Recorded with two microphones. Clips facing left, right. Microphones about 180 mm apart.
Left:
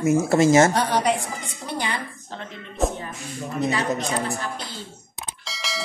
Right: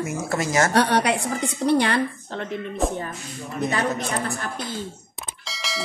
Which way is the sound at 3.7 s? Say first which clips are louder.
Even; 55° right (ahead or behind).